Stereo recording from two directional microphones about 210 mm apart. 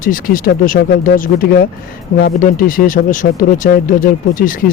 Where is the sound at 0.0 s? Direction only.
40° left (ahead or behind).